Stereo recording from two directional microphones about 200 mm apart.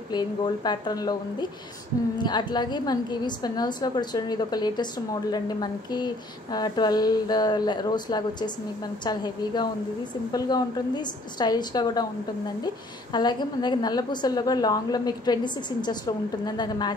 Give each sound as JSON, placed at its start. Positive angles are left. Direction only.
{"t": 0.1, "sound": "a woman's voice", "side_deg": 20}